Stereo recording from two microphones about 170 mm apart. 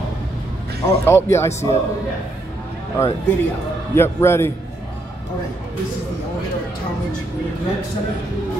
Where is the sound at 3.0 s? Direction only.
15° left (ahead or behind).